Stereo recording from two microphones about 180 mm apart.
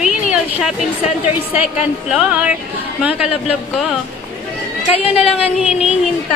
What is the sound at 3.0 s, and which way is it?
Speech, 5° right (ahead or behind).